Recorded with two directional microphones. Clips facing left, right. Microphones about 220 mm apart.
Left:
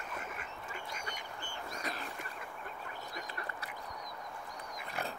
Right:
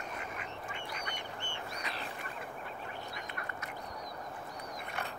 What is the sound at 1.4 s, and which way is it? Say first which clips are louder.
Duck: right 1 dB; 40° left (ahead or behind).